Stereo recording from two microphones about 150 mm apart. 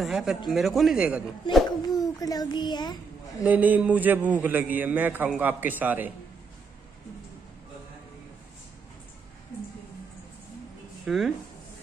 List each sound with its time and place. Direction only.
0.0 s speech: centre (ahead or behind)
1.5 s a child's voice: 30° left (ahead or behind)
3.4 s a man's voice: 10° right (ahead or behind)
11.1 s speech: centre (ahead or behind)